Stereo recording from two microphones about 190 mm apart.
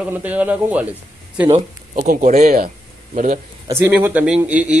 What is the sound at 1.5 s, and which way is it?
Speech, 40° right (ahead or behind).